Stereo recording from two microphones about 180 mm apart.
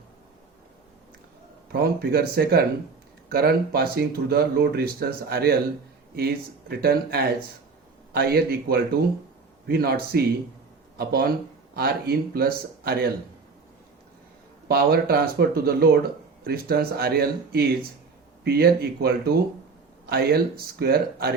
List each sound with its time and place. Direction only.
1.7 s speech: 55° right (ahead or behind)
14.7 s speech: 60° right (ahead or behind)